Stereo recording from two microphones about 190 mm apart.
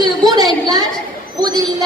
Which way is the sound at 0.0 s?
20° right (ahead or behind).